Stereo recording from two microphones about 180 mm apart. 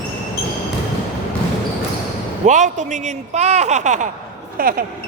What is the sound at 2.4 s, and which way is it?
Speech, 40° right (ahead or behind).